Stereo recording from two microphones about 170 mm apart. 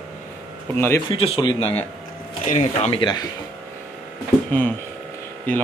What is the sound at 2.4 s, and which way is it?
Speech, 45° left (ahead or behind).